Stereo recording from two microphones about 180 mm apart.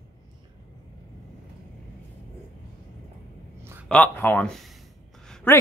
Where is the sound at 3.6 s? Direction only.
15° right (ahead or behind).